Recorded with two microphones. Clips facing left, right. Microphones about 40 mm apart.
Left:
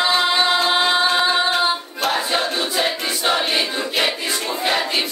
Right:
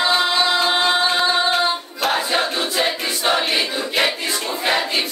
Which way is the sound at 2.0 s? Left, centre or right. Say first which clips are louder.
Right 1 dB; centre.